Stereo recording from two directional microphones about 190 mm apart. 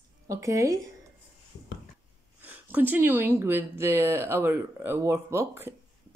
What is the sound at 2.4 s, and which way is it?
Speech, 10° right (ahead or behind).